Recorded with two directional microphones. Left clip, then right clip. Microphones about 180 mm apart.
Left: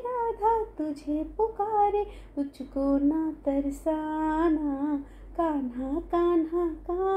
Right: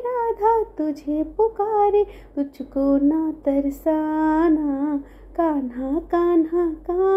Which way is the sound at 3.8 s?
35° right (ahead or behind).